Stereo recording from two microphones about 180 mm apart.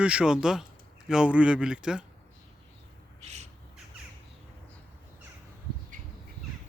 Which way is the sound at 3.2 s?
35° right (ahead or behind).